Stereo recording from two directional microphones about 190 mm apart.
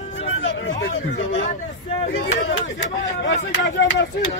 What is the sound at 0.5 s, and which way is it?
Speech, 75° left (ahead or behind).